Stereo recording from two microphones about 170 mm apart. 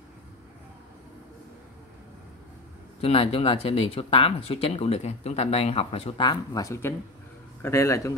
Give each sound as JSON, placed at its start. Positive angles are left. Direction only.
{"t": 3.0, "sound": "a man's voice", "side_deg": 35}